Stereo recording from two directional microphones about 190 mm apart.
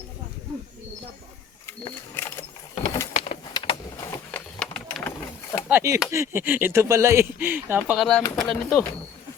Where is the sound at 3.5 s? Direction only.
25° left (ahead or behind).